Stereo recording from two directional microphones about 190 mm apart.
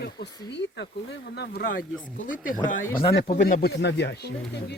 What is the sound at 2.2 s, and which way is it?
Speech, 45° left (ahead or behind).